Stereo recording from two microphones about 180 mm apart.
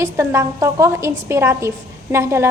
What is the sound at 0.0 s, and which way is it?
A woman's voice, 15° right (ahead or behind).